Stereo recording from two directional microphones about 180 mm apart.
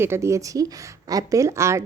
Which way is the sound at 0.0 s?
15° right (ahead or behind).